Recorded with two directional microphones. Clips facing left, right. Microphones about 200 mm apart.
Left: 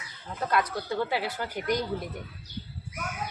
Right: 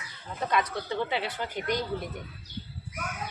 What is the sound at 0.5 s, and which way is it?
Speech, 10° left (ahead or behind).